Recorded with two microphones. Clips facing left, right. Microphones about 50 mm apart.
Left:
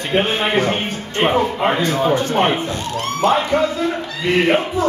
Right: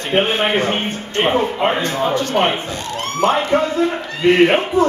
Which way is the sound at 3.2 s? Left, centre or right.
Right.